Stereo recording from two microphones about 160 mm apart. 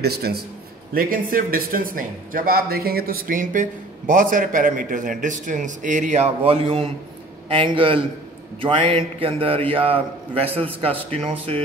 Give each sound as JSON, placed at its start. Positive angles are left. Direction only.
{"t": 0.0, "sound": "a man's voice", "side_deg": -80}
{"t": 0.9, "sound": "a man's voice", "side_deg": -65}